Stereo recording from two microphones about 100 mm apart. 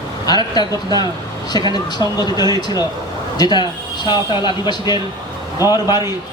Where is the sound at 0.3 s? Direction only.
45° left (ahead or behind).